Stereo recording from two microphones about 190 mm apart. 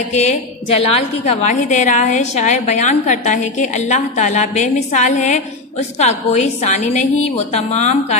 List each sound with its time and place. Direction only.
0.1 s a woman's voice: 35° left (ahead or behind)